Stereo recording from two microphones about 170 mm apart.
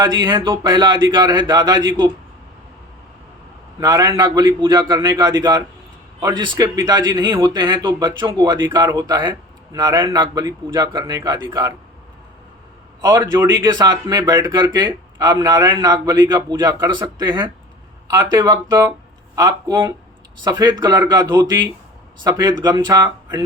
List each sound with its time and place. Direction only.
0.0 s speech: 25° right (ahead or behind)
3.8 s speech: 20° right (ahead or behind)
13.0 s a man's voice: 20° right (ahead or behind)